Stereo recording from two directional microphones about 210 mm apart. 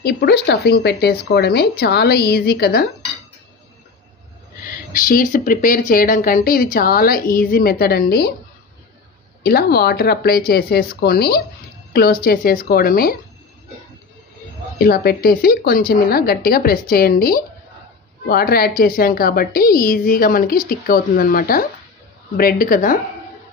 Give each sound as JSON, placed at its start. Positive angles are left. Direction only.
{"t": 0.0, "sound": "a woman's voice", "side_deg": 50}
{"t": 4.9, "sound": "a woman's voice", "side_deg": 45}
{"t": 9.4, "sound": "a woman's voice", "side_deg": 50}
{"t": 14.8, "sound": "a woman's voice", "side_deg": 45}